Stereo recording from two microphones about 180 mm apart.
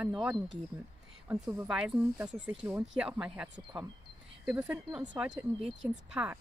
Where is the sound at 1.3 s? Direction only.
5° right (ahead or behind).